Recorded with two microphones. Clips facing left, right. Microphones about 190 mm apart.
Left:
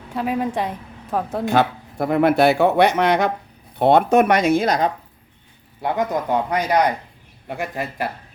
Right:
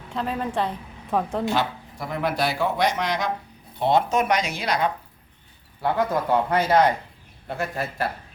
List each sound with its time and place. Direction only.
0.1 s a woman's voice: 10° left (ahead or behind)
1.5 s speech: 55° left (ahead or behind)
5.8 s a woman's voice: 20° left (ahead or behind)